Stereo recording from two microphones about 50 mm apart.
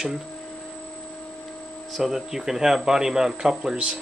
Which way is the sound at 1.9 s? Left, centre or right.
Centre.